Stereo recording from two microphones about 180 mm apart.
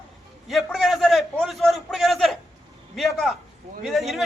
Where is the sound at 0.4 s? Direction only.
Centre (ahead or behind).